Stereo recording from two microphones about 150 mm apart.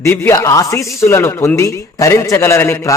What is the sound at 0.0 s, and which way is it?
A man's voice, 20° left (ahead or behind).